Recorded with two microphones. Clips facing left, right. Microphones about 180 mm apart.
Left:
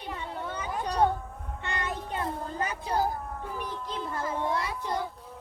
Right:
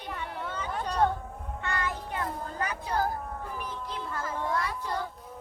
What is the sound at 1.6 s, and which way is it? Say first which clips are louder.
Child singing: right 1 dB; 25° left (ahead or behind).